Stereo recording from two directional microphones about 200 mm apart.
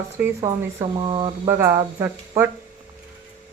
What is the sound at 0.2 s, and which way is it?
Speech, 15° right (ahead or behind).